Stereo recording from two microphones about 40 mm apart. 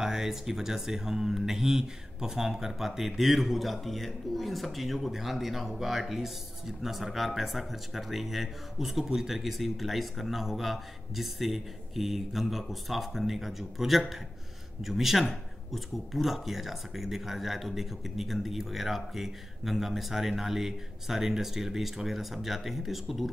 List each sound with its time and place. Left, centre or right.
0.0 s speech: centre